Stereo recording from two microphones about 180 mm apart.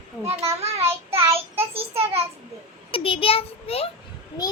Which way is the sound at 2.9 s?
30° left (ahead or behind).